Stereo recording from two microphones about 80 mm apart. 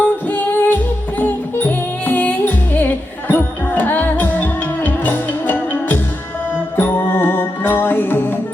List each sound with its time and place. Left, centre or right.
0.0 s music: left